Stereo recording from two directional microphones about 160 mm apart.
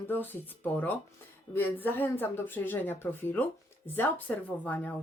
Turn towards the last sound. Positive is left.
turn(degrees=10)  # may be behind; listen again after turning